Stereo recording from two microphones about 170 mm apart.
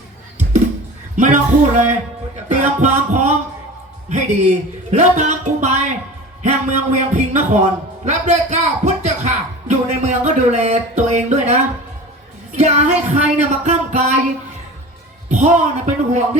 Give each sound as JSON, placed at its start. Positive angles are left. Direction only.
{"t": 1.1, "sound": "music", "side_deg": -45}
{"t": 2.5, "sound": "speech", "side_deg": -45}
{"t": 12.5, "sound": "speech", "side_deg": -45}
{"t": 15.3, "sound": "speech", "side_deg": -45}